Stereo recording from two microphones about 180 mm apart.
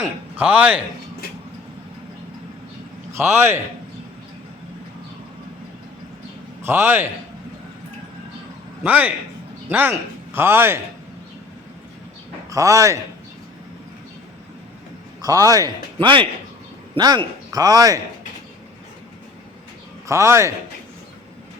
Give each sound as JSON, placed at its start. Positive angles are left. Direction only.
{"t": 0.0, "sound": "a man's voice", "side_deg": -10}
{"t": 3.2, "sound": "a man's voice", "side_deg": -15}
{"t": 6.6, "sound": "a man's voice", "side_deg": -15}
{"t": 8.8, "sound": "a man's voice", "side_deg": -10}
{"t": 12.5, "sound": "a man's voice", "side_deg": -20}
{"t": 15.2, "sound": "a man's voice", "side_deg": -20}
{"t": 20.1, "sound": "a man's voice", "side_deg": -15}